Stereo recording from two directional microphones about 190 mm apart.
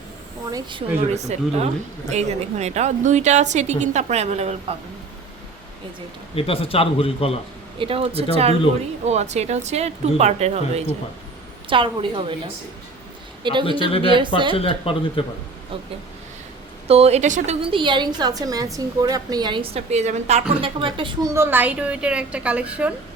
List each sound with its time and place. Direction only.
0.5 s a woman's voice: 25° right (ahead or behind)
6.3 s a man's voice: 30° left (ahead or behind)
7.8 s a woman's voice: 30° right (ahead or behind)
13.4 s a man's voice: 25° right (ahead or behind)
13.7 s a man's voice: 30° left (ahead or behind)
14.1 s a woman's voice: 25° right (ahead or behind)
14.5 s a man's voice: 30° left (ahead or behind)
16.9 s a woman's voice: 35° right (ahead or behind); by 23.0 s 5° right (ahead or behind)